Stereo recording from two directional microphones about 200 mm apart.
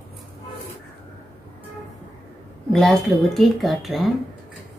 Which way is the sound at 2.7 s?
Centre (ahead or behind).